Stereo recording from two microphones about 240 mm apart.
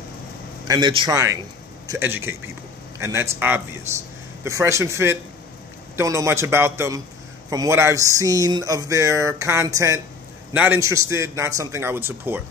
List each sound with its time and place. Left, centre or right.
0.7 s speech: centre